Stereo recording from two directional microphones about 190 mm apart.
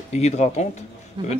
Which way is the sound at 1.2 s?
25° right (ahead or behind).